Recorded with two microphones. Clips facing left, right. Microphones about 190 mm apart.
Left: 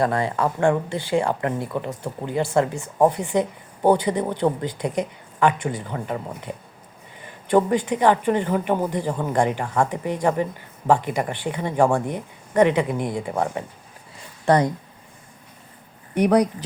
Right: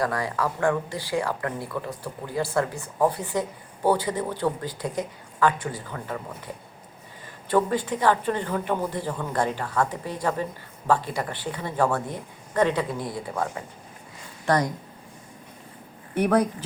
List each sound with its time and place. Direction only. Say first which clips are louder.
0.0 s speech: left 5 dB; 25° left (ahead or behind)
7.5 s a woman's voice: left 4 dB; 20° left (ahead or behind)
16.1 s a woman's voice: left 4 dB; 15° left (ahead or behind)